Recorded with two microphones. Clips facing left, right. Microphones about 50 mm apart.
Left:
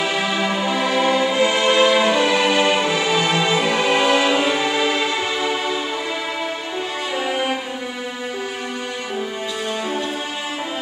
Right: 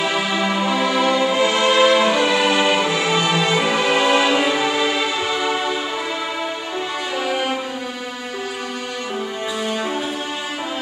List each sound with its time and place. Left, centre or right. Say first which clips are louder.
0.0 s music: right 1 dB; centre
7.2 s music: even; centre